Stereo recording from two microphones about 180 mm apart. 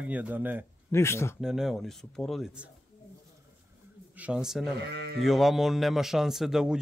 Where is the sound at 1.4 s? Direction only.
Centre (ahead or behind).